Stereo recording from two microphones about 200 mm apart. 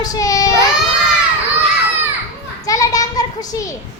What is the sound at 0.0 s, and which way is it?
Child singing, 15° left (ahead or behind).